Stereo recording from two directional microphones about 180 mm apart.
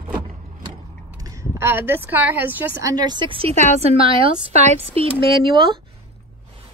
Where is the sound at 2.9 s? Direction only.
25° right (ahead or behind).